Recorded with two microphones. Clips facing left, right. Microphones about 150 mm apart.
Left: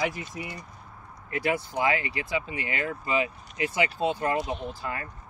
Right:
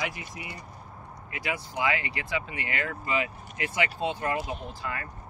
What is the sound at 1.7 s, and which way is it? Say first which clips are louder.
Speech: left 3 dB; 30° left (ahead or behind).